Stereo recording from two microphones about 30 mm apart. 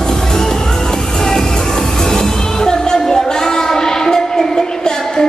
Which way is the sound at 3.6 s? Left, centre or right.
Centre.